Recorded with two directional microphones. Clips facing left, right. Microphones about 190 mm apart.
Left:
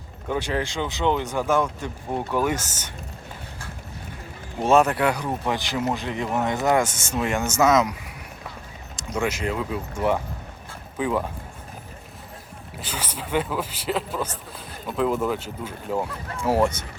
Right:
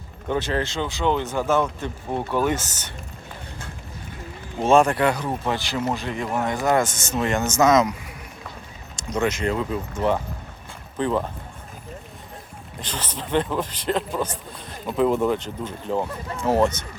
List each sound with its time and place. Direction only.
0.3 s speech: 10° left (ahead or behind)
4.6 s speech: 5° left (ahead or behind)
9.0 s speech: 5° left (ahead or behind)
12.8 s speech: 10° left (ahead or behind)